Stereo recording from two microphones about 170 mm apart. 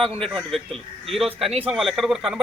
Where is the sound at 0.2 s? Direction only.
Centre (ahead or behind).